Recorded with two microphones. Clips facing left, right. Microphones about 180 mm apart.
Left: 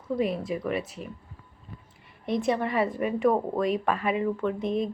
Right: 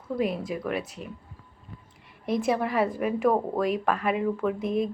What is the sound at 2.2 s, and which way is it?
Speech, centre (ahead or behind).